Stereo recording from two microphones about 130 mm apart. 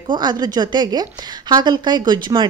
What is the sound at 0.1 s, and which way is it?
A woman's voice, 35° right (ahead or behind).